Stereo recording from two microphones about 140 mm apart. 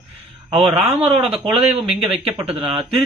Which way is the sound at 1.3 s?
5° right (ahead or behind).